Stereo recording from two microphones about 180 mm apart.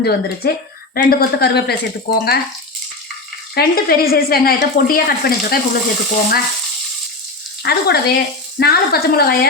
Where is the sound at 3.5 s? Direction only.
60° left (ahead or behind).